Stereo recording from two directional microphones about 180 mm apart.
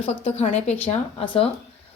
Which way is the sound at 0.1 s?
35° left (ahead or behind).